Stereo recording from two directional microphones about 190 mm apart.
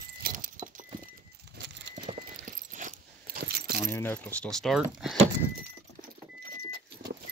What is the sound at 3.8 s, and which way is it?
Speech, 10° left (ahead or behind).